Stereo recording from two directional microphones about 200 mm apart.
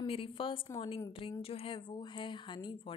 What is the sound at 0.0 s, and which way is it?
A woman's voice, 25° left (ahead or behind).